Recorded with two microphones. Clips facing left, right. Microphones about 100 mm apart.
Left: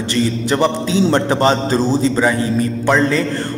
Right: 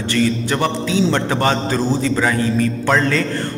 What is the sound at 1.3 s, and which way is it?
Speech, 25° left (ahead or behind).